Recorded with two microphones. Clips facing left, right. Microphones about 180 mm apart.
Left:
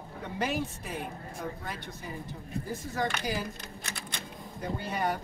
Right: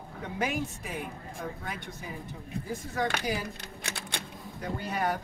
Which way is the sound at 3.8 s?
65° right (ahead or behind).